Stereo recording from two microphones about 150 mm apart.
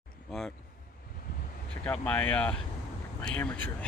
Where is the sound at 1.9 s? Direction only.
10° left (ahead or behind).